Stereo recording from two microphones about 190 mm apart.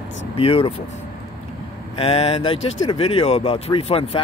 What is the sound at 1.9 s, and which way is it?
Speech, 30° left (ahead or behind).